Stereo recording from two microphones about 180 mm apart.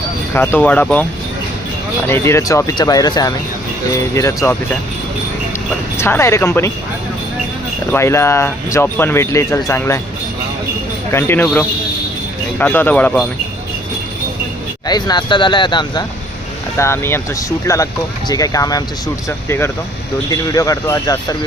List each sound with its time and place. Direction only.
0.3 s speech: 10° left (ahead or behind)
2.0 s speech: 15° left (ahead or behind)
6.0 s speech: 15° left (ahead or behind)
7.9 s speech: 15° left (ahead or behind)
11.1 s speech: 15° left (ahead or behind)
12.5 s speech: 10° left (ahead or behind)
14.8 s speech: 20° left (ahead or behind)
16.7 s speech: 15° left (ahead or behind)